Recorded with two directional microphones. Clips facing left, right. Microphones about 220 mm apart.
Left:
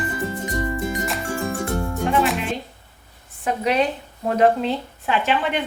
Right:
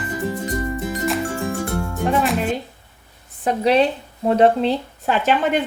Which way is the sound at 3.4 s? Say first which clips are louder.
Right 4 dB; 30° right (ahead or behind).